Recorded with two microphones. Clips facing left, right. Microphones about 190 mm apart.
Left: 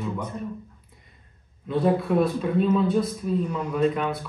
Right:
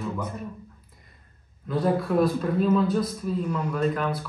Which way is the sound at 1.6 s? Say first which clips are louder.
Left 2 dB; centre (ahead or behind).